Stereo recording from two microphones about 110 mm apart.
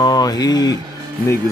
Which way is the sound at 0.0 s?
40° left (ahead or behind).